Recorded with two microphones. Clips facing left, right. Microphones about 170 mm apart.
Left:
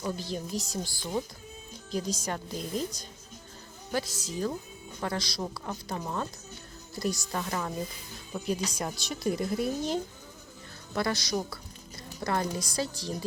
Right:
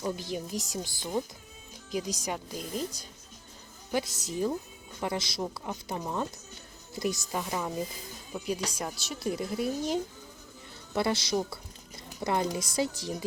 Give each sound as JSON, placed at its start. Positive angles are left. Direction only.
{"t": 0.0, "sound": "a woman's voice", "side_deg": -15}
{"t": 3.9, "sound": "a woman's voice", "side_deg": -20}
{"t": 10.9, "sound": "speech", "side_deg": -25}